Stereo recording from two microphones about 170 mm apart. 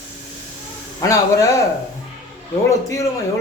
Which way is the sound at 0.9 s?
20° left (ahead or behind).